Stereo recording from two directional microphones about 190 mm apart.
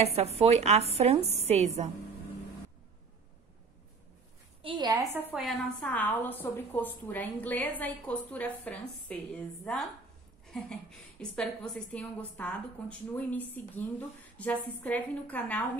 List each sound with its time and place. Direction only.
0.0 s speech: 35° right (ahead or behind)
4.6 s a woman's voice: 25° right (ahead or behind)
5.3 s a woman's voice: centre (ahead or behind)